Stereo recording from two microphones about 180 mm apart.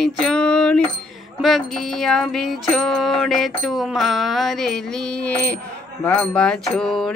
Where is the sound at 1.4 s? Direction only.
Centre (ahead or behind).